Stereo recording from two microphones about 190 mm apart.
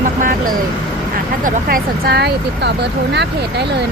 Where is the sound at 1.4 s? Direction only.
50° right (ahead or behind).